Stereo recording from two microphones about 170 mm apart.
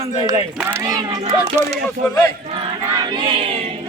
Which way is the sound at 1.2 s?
35° right (ahead or behind).